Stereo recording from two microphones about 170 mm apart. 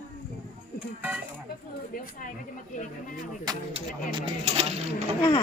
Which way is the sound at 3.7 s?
30° right (ahead or behind).